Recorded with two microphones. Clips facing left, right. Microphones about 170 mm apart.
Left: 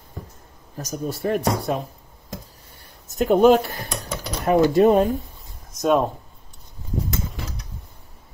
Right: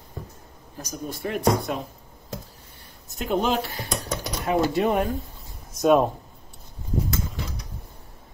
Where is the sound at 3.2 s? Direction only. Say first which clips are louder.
Left 9 dB; 45° left (ahead or behind).